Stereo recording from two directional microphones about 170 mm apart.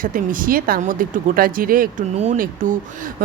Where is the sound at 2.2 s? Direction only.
45° right (ahead or behind).